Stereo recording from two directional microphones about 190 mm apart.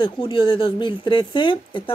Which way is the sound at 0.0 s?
25° left (ahead or behind).